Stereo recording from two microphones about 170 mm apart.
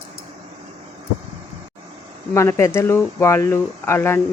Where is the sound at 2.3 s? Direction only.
15° left (ahead or behind).